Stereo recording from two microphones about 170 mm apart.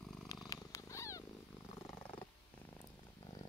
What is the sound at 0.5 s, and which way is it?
Cat, 20° left (ahead or behind).